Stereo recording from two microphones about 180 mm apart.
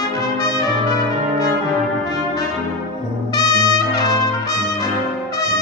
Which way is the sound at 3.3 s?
20° left (ahead or behind).